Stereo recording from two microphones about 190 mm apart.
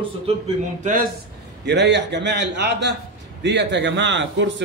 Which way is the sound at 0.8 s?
45° right (ahead or behind).